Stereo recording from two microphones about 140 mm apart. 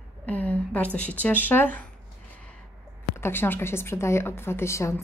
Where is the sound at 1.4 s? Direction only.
10° left (ahead or behind).